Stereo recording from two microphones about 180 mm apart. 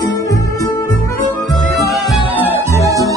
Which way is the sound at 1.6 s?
Centre (ahead or behind).